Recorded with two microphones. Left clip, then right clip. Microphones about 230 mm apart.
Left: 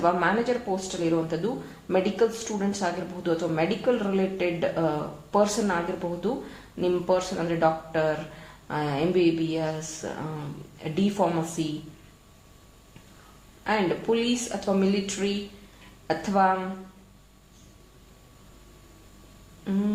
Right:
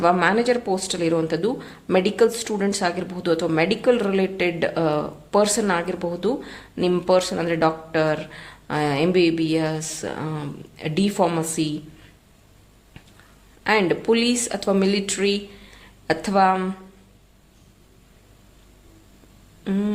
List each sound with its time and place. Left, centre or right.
0.0 s speech: right
13.7 s speech: right
19.7 s speech: right